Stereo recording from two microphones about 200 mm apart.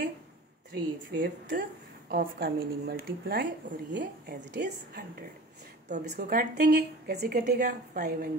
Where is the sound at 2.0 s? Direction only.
50° right (ahead or behind).